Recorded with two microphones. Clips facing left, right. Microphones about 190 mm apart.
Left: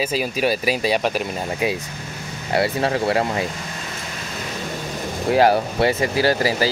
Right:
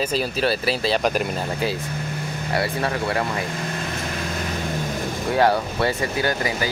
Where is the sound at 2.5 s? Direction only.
25° left (ahead or behind).